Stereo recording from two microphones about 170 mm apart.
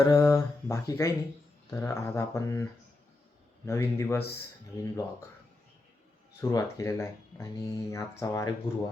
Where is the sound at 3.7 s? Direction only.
15° left (ahead or behind).